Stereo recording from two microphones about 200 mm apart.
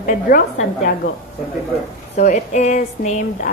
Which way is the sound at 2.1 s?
35° left (ahead or behind).